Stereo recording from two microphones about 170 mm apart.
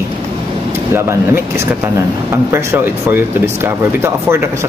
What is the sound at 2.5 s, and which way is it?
Speech, 15° right (ahead or behind).